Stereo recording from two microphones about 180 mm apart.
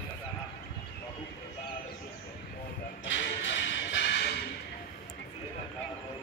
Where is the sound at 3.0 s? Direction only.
85° left.